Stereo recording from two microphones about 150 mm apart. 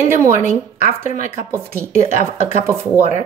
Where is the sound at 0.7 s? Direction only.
50° left (ahead or behind).